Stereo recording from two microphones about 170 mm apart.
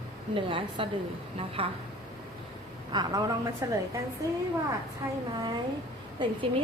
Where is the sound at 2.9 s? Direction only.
25° right (ahead or behind).